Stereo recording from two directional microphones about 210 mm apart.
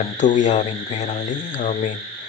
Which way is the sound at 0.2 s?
35° left (ahead or behind).